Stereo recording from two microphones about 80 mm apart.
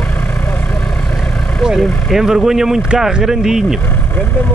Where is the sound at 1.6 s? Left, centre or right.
Centre.